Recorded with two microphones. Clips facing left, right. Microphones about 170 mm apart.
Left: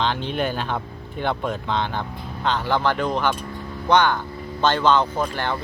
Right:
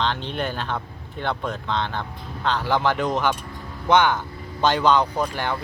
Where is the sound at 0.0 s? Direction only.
5° left (ahead or behind).